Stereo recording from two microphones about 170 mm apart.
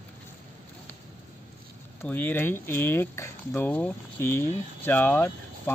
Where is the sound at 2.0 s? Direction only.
10° left (ahead or behind).